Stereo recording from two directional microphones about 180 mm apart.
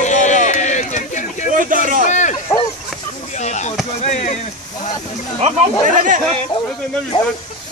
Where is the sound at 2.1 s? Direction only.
45° left (ahead or behind).